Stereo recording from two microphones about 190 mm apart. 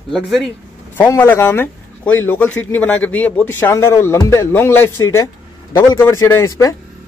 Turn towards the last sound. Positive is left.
turn(degrees=15)  # may be behind; listen again after turning